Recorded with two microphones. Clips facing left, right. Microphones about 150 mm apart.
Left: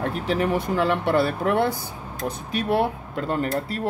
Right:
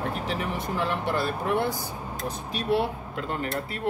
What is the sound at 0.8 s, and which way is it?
Speech, 65° left (ahead or behind).